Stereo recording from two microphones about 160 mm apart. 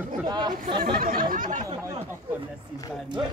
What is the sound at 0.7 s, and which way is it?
Speech, 65° right (ahead or behind).